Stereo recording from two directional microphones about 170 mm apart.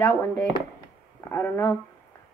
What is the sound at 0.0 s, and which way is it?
A woman's voice, 15° left (ahead or behind).